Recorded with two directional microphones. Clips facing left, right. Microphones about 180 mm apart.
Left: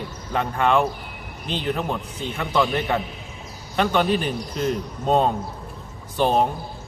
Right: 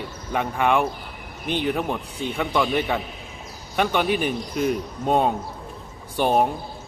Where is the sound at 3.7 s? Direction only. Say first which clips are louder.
Left 1 dB; 10° right (ahead or behind).